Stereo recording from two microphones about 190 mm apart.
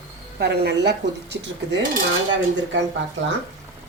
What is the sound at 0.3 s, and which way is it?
Speech, 60° right (ahead or behind).